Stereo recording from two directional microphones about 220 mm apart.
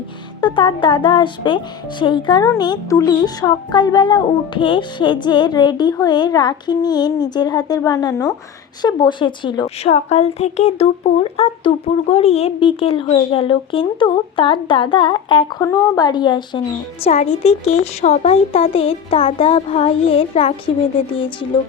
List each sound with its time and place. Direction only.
0.4 s a woman's voice: 20° left (ahead or behind)